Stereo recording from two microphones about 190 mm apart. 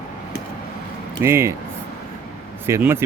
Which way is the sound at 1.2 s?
15° right (ahead or behind).